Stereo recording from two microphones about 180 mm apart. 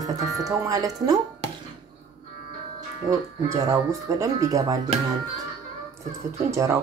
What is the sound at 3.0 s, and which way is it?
Speech, 20° right (ahead or behind).